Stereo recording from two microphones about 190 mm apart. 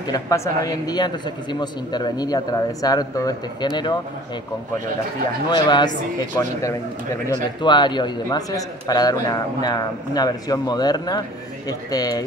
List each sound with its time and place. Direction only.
0.1 s a man's voice: 20° left (ahead or behind)
5.5 s a man's voice: 25° left (ahead or behind)